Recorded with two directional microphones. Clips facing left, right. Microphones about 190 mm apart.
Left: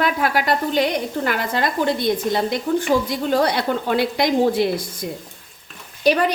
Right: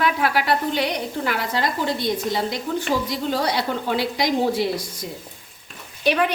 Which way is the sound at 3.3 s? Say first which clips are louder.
Left 6 dB; 55° left (ahead or behind).